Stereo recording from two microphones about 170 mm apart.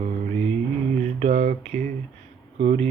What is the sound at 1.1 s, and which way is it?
Mantra, 45° right (ahead or behind).